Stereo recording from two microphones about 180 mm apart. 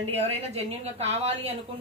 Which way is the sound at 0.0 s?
35° right (ahead or behind).